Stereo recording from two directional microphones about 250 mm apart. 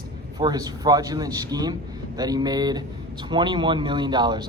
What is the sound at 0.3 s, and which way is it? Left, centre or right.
Speech, centre.